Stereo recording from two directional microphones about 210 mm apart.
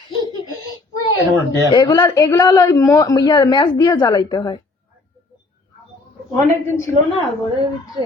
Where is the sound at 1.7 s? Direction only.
20° left (ahead or behind).